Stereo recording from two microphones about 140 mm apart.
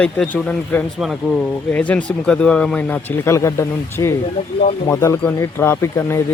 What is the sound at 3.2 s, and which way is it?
Speech, 20° left (ahead or behind).